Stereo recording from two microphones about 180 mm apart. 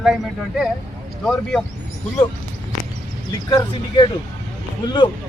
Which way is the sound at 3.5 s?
20° left (ahead or behind).